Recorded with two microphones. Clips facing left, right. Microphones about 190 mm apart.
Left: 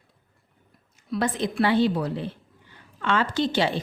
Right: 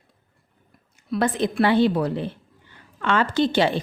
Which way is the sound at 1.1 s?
55° right (ahead or behind).